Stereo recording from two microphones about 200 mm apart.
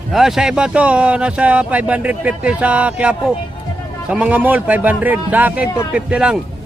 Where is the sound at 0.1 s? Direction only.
Centre (ahead or behind).